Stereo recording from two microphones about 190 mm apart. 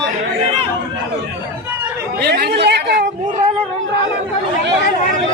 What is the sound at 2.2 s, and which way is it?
Chatter, 60° right (ahead or behind).